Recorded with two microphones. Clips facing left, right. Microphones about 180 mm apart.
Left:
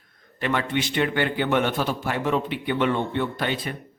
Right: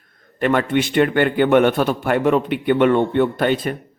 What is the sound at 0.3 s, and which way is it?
A man's voice, 55° right (ahead or behind).